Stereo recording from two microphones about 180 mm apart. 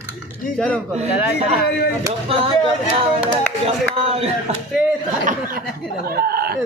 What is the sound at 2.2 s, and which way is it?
Speech, 30° right (ahead or behind).